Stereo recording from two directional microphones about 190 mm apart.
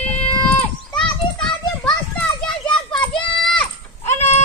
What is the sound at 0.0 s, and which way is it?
Children playing, 5° left (ahead or behind).